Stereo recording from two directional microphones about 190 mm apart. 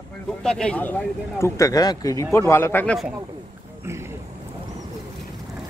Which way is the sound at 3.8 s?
15° right (ahead or behind).